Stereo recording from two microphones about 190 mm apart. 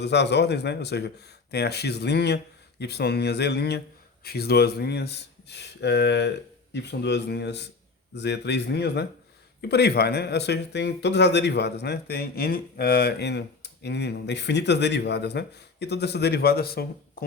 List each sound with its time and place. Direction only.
0.0 s speech: 60° left (ahead or behind)